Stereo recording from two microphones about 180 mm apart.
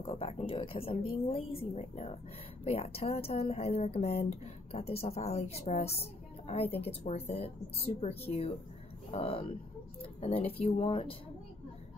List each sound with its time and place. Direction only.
0.0 s speech: 30° left (ahead or behind)